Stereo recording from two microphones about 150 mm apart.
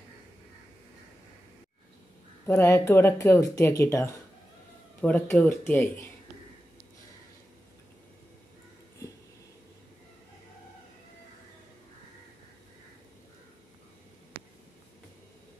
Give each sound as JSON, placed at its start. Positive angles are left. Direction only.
{"t": 2.4, "sound": "speech", "side_deg": 15}